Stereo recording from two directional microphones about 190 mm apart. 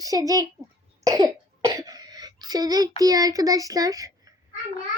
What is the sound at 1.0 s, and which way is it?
Cough, 20° right (ahead or behind).